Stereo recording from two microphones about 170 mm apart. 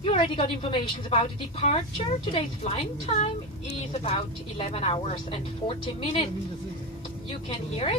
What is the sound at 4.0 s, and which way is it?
A woman's voice, 35° left (ahead or behind).